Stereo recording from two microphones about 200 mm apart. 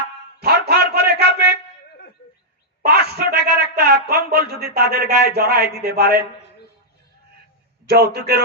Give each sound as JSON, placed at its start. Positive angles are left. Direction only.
{"t": 0.3, "sound": "a sound", "side_deg": -55}
{"t": 2.8, "sound": "a man's voice", "side_deg": -50}
{"t": 7.9, "sound": "a man's voice", "side_deg": -55}